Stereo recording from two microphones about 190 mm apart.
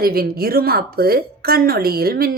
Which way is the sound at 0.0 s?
55° right (ahead or behind).